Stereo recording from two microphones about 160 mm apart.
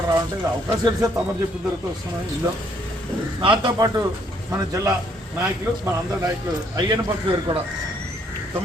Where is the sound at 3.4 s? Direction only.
30° right (ahead or behind).